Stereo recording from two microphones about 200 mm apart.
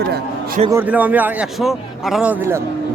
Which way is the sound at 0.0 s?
50° right (ahead or behind).